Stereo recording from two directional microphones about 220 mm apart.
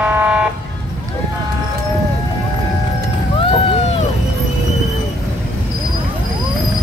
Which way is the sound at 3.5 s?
25° left (ahead or behind).